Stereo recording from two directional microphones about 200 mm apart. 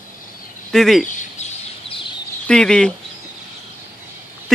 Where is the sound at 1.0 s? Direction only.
40° left (ahead or behind).